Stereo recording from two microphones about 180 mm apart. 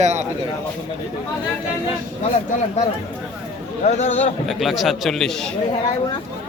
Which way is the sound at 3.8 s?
40° left (ahead or behind).